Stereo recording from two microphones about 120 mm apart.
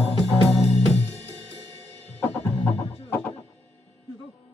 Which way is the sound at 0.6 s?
60° left (ahead or behind).